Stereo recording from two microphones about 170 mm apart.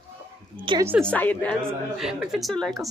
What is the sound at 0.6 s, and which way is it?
Speech, 30° right (ahead or behind).